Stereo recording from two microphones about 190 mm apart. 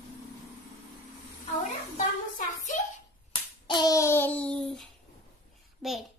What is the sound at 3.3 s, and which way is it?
Hands, 20° left (ahead or behind).